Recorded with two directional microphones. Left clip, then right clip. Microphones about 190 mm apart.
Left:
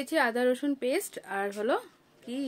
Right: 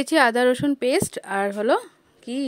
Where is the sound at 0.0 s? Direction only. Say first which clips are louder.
Right 9 dB; 55° right (ahead or behind).